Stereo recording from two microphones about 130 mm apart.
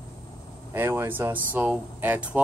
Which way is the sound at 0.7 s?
20° right (ahead or behind).